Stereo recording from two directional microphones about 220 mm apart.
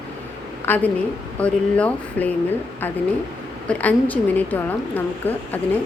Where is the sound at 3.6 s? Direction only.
5° left (ahead or behind).